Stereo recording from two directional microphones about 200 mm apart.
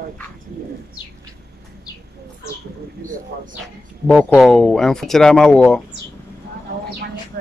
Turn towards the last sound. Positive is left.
turn(degrees=5)  # may be behind; listen again after turning